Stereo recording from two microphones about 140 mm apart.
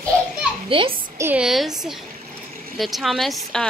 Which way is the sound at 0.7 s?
40° right (ahead or behind).